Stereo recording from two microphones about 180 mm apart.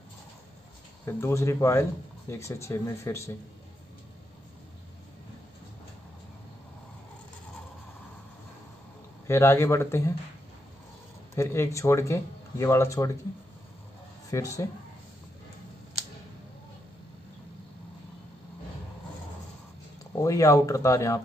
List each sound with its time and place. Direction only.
1.0 s speech: 15° left (ahead or behind)
9.3 s speech: 15° left (ahead or behind)
11.3 s speech: 15° left (ahead or behind)
14.3 s speech: 15° left (ahead or behind)
20.0 s speech: 20° left (ahead or behind)